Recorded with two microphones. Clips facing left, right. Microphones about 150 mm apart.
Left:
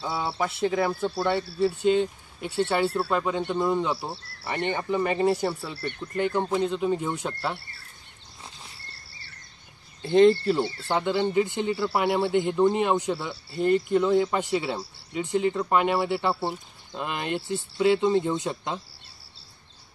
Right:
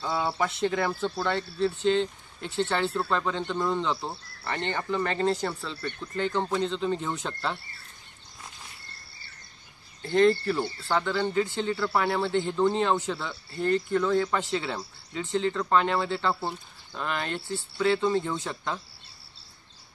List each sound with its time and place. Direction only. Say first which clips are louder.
0.0 s speech: even; 5° left (ahead or behind)
10.0 s speech: left 4 dB; 20° left (ahead or behind)